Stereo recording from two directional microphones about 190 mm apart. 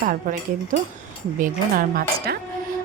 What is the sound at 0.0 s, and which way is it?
A woman's voice, 45° right (ahead or behind).